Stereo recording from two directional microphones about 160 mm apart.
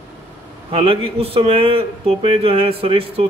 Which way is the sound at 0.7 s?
35° right (ahead or behind).